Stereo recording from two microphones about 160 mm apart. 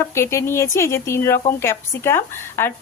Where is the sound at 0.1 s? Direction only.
15° left (ahead or behind).